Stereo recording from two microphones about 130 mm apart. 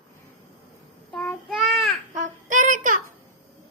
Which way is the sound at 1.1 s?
Centre (ahead or behind).